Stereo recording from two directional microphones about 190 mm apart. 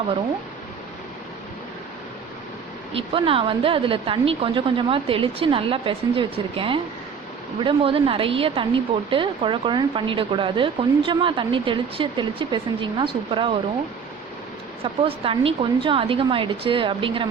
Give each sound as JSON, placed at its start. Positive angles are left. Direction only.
{"t": 2.9, "sound": "a woman's voice", "side_deg": -30}
{"t": 15.0, "sound": "a woman's voice", "side_deg": -30}